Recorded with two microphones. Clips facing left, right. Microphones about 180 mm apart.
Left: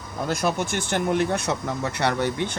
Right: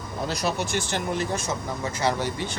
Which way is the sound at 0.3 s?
50° left (ahead or behind).